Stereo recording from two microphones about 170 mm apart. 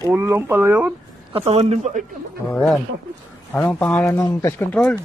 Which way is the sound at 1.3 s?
35° right (ahead or behind).